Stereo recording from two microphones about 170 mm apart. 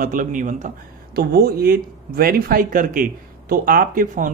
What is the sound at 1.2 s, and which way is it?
Speech, 65° right (ahead or behind).